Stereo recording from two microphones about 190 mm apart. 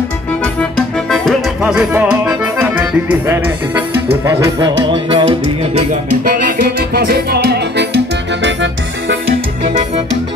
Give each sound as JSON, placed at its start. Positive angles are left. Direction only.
{"t": 0.4, "sound": "accordion", "side_deg": 5}
{"t": 4.3, "sound": "music", "side_deg": -15}
{"t": 5.8, "sound": "music", "side_deg": -45}